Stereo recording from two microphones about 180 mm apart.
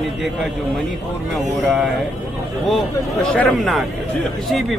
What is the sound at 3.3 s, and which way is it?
A man's voice, centre (ahead or behind).